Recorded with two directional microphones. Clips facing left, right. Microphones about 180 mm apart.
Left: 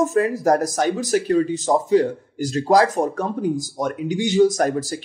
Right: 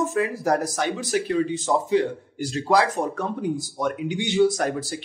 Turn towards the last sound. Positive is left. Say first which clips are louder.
# left 5 dB
turn(degrees=40)  # may be behind; listen again after turning